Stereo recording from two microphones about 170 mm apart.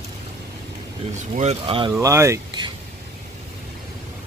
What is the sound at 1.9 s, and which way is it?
Speech, 15° right (ahead or behind).